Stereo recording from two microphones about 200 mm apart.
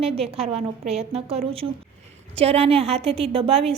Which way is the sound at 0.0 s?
30° right (ahead or behind).